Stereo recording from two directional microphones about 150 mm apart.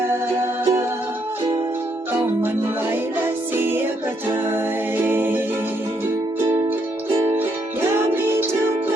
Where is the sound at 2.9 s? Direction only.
15° right (ahead or behind).